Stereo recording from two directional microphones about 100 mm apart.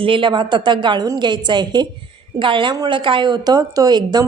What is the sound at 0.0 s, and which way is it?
A woman's voice, 60° right (ahead or behind).